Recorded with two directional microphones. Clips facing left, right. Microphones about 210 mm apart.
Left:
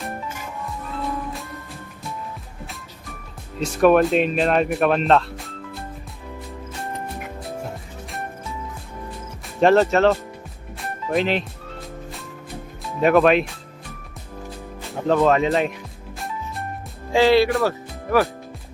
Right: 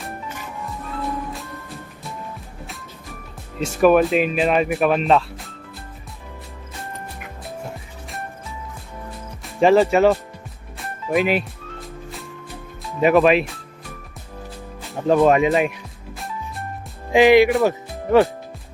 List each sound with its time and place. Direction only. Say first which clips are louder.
3.8 s speech: even; centre (ahead or behind)
9.6 s speech: right 1 dB; 5° right (ahead or behind)
10.8 s music: right 2 dB; 5° right (ahead or behind)
13.0 s speech: right 1 dB; 5° right (ahead or behind)
15.0 s speech: right 2 dB; 15° right (ahead or behind)
17.1 s speech: right 3 dB; 15° right (ahead or behind)
17.6 s music: right 3 dB; 20° right (ahead or behind)